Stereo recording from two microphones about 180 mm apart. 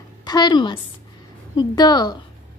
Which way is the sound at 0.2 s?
25° left (ahead or behind).